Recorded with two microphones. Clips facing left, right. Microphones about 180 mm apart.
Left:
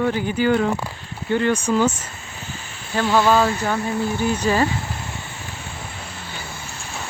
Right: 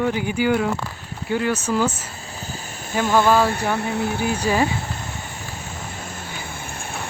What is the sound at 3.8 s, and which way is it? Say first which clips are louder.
Speech: left 1 dB; 70° right (ahead or behind).